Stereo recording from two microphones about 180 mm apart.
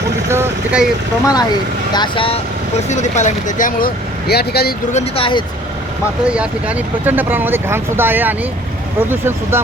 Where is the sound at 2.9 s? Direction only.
40° left (ahead or behind); by 4.7 s 60° left (ahead or behind).